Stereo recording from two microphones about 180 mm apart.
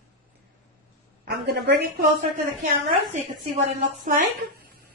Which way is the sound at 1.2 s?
70° right (ahead or behind).